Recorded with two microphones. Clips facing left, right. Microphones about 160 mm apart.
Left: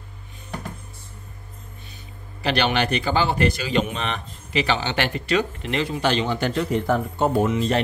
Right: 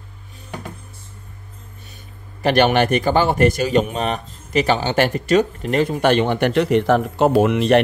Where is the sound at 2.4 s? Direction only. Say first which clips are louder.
Right 7 dB; 50° right (ahead or behind).